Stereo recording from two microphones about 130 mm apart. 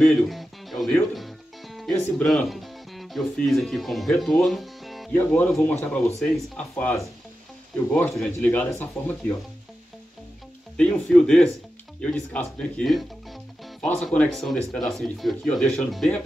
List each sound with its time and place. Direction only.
0.0 s music: centre (ahead or behind)
2.2 s speech: centre (ahead or behind)
5.1 s speech: 15° left (ahead or behind)
6.1 s speech: 5° left (ahead or behind)
10.8 s speech: 5° left (ahead or behind)